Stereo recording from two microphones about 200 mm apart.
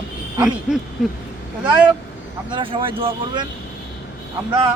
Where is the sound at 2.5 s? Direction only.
25° right (ahead or behind).